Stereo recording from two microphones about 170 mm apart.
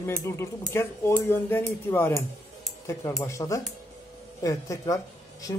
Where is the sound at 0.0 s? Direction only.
15° left (ahead or behind).